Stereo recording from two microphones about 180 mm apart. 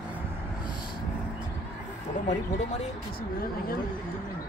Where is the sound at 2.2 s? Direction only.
40° left (ahead or behind).